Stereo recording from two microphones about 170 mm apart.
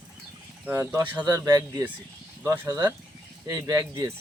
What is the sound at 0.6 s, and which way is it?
Speech, 15° right (ahead or behind).